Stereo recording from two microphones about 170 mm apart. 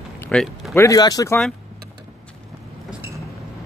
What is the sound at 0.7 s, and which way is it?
Speech, 20° left (ahead or behind).